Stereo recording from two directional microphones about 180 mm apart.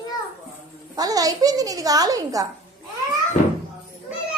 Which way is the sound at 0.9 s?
20° right (ahead or behind).